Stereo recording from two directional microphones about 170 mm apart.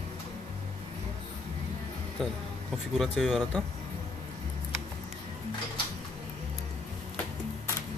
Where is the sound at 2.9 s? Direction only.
10° left (ahead or behind).